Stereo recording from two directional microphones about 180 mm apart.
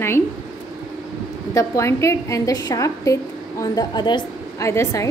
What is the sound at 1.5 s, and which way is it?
A woman's voice, 15° left (ahead or behind).